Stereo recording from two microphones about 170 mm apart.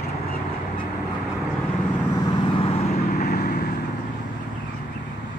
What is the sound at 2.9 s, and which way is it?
Vehicle, 60° left (ahead or behind).